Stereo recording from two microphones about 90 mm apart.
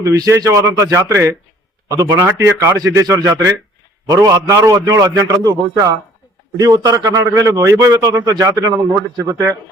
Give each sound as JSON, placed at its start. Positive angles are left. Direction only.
{"t": 0.0, "sound": "a man's voice", "side_deg": -40}